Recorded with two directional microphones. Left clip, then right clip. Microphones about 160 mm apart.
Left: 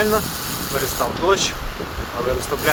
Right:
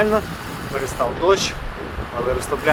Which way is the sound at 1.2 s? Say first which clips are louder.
Right 1 dB; 15° right (ahead or behind).